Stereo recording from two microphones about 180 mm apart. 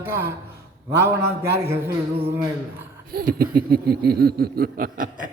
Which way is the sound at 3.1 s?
55° right (ahead or behind).